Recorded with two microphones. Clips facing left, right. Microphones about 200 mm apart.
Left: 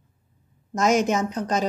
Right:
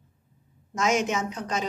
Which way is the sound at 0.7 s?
40° left (ahead or behind).